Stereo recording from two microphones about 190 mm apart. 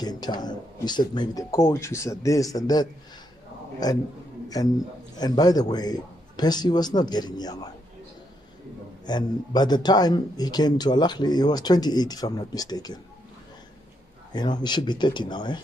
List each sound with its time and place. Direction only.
0.0 s speech: 20° left (ahead or behind)
5.1 s speech: 20° left (ahead or behind)
9.0 s speech: 20° left (ahead or behind)
14.3 s speech: 20° left (ahead or behind)